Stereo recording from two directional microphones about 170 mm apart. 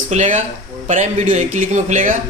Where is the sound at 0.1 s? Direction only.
45° right (ahead or behind).